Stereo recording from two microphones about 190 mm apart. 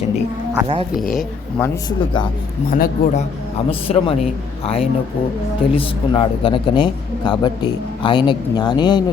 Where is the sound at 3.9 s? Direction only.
35° left (ahead or behind).